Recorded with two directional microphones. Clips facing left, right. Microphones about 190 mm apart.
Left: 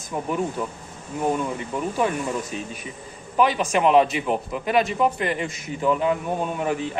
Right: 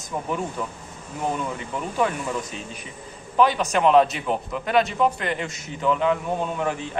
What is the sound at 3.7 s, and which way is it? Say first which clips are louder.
Speech: even; 5° left (ahead or behind).